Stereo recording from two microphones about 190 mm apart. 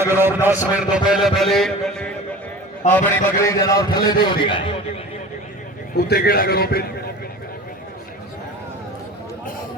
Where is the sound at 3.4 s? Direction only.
15° left (ahead or behind).